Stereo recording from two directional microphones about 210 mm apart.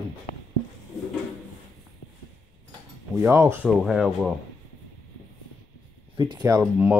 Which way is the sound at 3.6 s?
Centre (ahead or behind).